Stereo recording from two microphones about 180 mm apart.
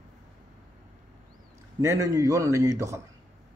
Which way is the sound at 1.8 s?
20° right (ahead or behind).